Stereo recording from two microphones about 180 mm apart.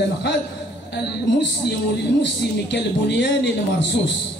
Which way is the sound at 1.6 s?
65° left (ahead or behind).